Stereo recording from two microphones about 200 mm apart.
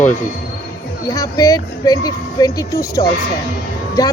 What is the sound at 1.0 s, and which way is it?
Speech, 15° left (ahead or behind).